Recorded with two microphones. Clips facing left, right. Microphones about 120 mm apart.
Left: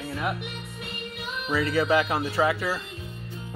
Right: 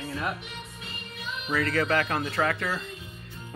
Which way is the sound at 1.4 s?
10° left (ahead or behind).